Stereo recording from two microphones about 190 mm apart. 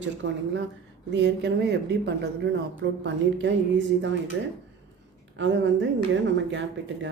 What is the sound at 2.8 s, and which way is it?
A woman's voice, 75° right (ahead or behind).